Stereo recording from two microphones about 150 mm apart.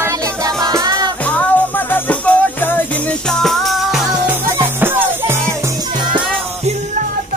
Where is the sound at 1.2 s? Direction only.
10° left (ahead or behind).